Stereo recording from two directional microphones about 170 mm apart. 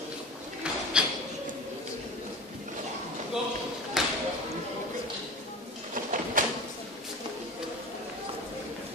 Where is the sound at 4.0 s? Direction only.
Centre (ahead or behind).